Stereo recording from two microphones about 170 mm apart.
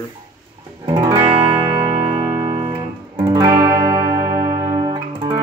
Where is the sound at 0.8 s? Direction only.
25° right (ahead or behind).